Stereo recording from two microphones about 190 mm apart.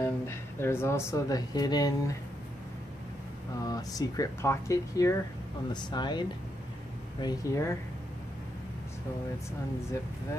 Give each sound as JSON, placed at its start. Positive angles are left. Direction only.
{"t": 0.6, "sound": "speech", "side_deg": 15}
{"t": 3.6, "sound": "speech", "side_deg": 20}